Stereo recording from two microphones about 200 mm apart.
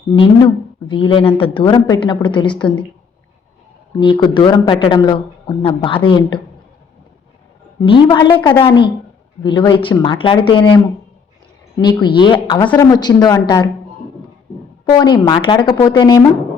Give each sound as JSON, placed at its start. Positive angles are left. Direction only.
{"t": 0.2, "sound": "a woman's voice", "side_deg": 25}
{"t": 4.0, "sound": "a woman's voice", "side_deg": 25}
{"t": 7.8, "sound": "a woman's voice", "side_deg": 25}
{"t": 11.8, "sound": "a woman's voice", "side_deg": 20}
{"t": 12.6, "sound": "speech", "side_deg": 10}
{"t": 12.9, "sound": "a woman's voice", "side_deg": 20}
{"t": 14.8, "sound": "a woman's voice", "side_deg": 20}